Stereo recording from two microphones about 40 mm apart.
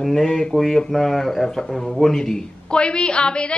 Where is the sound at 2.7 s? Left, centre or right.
Left.